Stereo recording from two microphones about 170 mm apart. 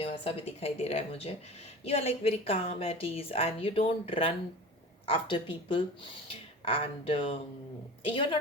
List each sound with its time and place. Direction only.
0.0 s a woman's voice: 35° left (ahead or behind)